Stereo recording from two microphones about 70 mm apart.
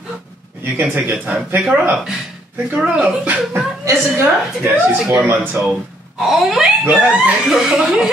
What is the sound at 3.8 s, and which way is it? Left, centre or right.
A woman's voice, right.